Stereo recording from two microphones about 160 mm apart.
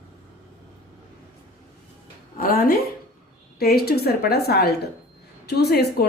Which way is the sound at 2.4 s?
65° left (ahead or behind).